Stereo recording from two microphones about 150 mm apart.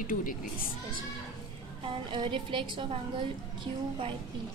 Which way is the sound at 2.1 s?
35° right (ahead or behind).